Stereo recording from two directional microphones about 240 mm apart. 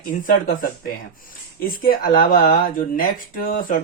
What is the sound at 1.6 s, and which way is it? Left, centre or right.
Speech, left.